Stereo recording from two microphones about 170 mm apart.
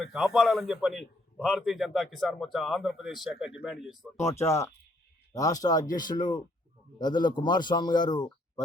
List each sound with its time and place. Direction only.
0.0 s a man's voice: centre (ahead or behind)
4.3 s a man's voice: 15° left (ahead or behind)